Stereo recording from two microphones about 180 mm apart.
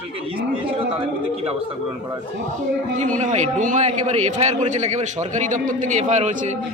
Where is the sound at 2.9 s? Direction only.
45° right (ahead or behind).